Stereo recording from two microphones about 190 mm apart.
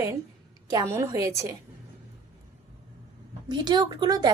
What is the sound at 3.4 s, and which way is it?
Speech, 25° right (ahead or behind).